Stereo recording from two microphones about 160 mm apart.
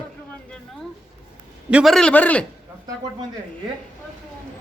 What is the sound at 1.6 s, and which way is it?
Speech, 10° right (ahead or behind).